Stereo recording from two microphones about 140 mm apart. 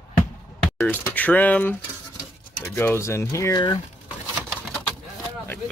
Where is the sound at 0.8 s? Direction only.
10° left (ahead or behind).